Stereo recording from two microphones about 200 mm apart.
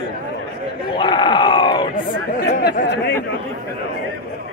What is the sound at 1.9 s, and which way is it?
Speech, 55° left (ahead or behind).